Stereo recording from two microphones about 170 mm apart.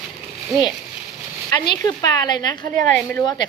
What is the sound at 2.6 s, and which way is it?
Speech, 50° right (ahead or behind).